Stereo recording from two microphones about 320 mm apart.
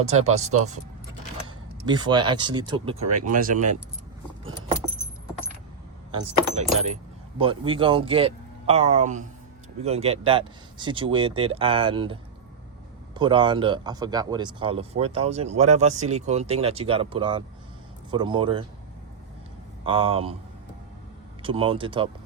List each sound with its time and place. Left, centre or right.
0.0 s speech: right
1.9 s speech: centre
6.8 s speech: centre
13.1 s speech: centre
19.8 s speech: centre
21.4 s speech: centre